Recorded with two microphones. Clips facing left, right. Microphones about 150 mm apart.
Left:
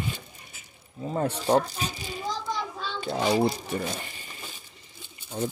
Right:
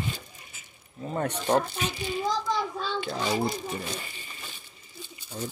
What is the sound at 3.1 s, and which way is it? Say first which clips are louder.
Speech: left 6 dB; 35° left (ahead or behind).